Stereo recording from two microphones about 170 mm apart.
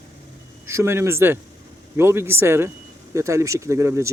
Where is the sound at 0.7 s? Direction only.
15° right (ahead or behind).